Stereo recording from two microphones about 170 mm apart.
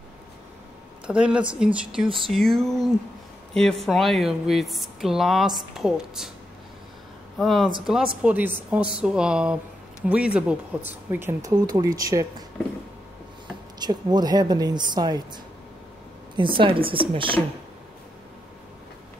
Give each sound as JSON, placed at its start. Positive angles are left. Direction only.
{"t": 1.0, "sound": "speech", "side_deg": -5}
{"t": 7.3, "sound": "speech", "side_deg": 0}
{"t": 13.7, "sound": "speech", "side_deg": -25}
{"t": 16.3, "sound": "speech", "side_deg": -30}